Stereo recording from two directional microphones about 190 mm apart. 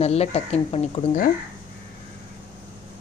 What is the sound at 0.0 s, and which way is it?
Speech, 35° left (ahead or behind).